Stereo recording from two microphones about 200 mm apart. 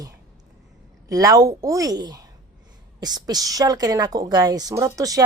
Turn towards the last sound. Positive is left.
turn(degrees=-15)  # may be behind; listen again after turning